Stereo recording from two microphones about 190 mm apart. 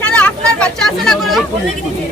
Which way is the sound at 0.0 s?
5° left (ahead or behind).